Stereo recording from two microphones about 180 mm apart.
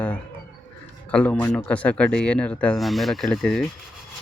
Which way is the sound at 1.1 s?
10° left (ahead or behind).